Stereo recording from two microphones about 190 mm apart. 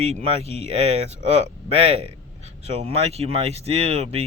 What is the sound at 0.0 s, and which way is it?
Speech, 35° right (ahead or behind).